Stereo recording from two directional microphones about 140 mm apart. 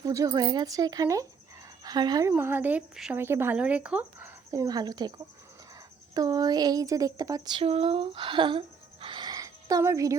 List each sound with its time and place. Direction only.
0.0 s speech: 25° right (ahead or behind)
2.3 s speech: 15° right (ahead or behind)
4.5 s speech: 25° right (ahead or behind)
7.6 s speech: 45° right (ahead or behind); by 10.2 s 25° right (ahead or behind)